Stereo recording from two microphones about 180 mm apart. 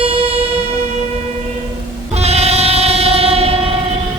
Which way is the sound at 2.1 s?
35° right (ahead or behind).